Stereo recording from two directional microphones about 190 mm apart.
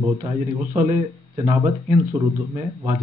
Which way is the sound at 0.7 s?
35° right (ahead or behind).